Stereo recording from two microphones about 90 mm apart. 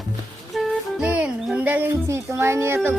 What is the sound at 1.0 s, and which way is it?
Music, 15° right (ahead or behind).